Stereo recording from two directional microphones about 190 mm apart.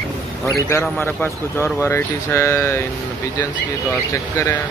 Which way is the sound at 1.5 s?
10° left (ahead or behind).